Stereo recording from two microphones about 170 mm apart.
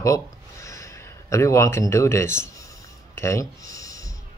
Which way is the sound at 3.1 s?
15° left (ahead or behind).